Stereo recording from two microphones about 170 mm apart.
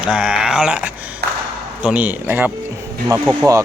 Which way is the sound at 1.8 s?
5° right (ahead or behind).